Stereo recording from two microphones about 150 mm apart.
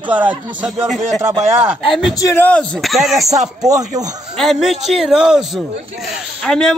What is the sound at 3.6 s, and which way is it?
Speech, 25° right (ahead or behind).